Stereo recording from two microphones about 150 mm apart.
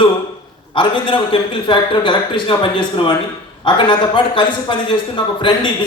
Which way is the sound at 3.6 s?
30° left (ahead or behind).